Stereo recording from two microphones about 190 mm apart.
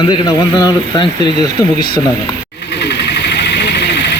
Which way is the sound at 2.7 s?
65° left (ahead or behind).